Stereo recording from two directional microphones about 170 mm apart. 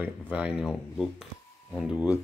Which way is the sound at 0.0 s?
10° right (ahead or behind).